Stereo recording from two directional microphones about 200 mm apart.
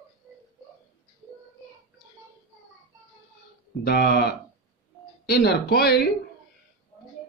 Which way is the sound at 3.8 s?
50° left (ahead or behind).